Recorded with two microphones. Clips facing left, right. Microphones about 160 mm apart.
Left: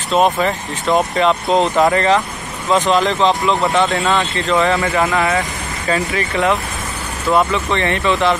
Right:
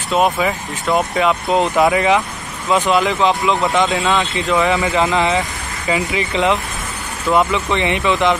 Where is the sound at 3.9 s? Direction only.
Centre (ahead or behind).